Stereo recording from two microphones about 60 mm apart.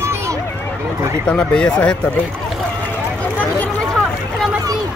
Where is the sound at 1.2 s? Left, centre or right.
Centre.